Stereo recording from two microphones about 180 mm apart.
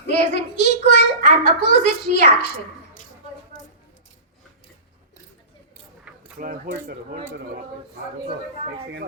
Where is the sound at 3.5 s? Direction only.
45° left (ahead or behind).